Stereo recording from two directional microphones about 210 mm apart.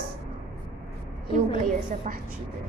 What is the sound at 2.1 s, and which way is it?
Speech, 40° right (ahead or behind).